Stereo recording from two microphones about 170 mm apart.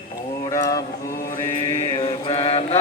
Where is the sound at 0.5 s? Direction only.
20° left (ahead or behind).